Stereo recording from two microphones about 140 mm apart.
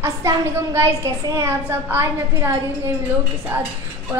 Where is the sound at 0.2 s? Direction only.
20° right (ahead or behind).